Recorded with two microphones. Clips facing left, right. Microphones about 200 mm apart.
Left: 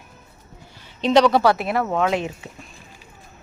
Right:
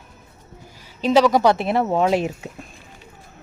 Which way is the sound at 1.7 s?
25° right (ahead or behind).